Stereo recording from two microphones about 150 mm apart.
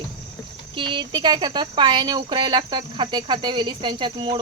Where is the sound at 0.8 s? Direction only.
35° right (ahead or behind).